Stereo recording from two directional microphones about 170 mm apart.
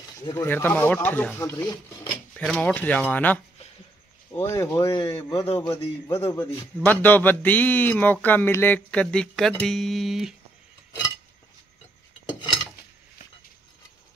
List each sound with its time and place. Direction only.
0.2 s speech: 15° left (ahead or behind)
2.3 s speech: 10° left (ahead or behind)
4.4 s speech: 20° left (ahead or behind)
5.5 s a man's voice: 35° left (ahead or behind)
6.0 s speech: 15° left (ahead or behind); by 10.3 s centre (ahead or behind)